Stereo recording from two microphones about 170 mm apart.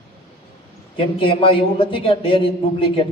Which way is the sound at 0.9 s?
30° left (ahead or behind).